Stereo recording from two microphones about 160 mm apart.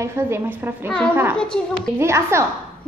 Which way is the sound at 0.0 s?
15° right (ahead or behind).